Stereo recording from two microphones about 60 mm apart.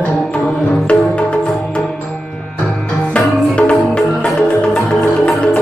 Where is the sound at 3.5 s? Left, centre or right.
Centre.